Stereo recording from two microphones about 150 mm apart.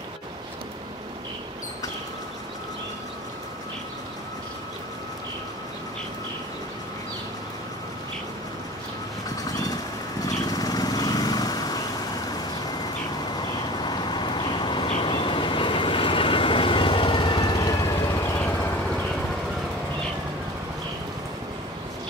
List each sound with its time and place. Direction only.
10.2 s lawn mower: 25° left (ahead or behind)
13.8 s vehicle: 30° left (ahead or behind)